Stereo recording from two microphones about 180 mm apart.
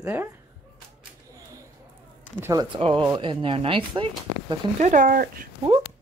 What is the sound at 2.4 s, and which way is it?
Speech, 20° right (ahead or behind).